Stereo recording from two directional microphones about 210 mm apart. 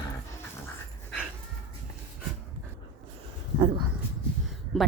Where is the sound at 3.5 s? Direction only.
25° right (ahead or behind).